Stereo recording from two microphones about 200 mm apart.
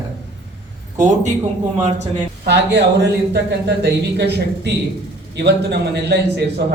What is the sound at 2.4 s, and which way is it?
A man's voice, 60° right (ahead or behind).